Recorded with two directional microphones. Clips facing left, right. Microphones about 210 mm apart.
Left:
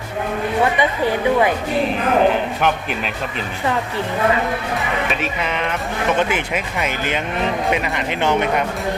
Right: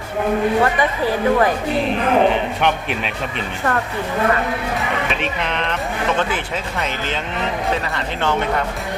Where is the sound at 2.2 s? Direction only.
Centre (ahead or behind).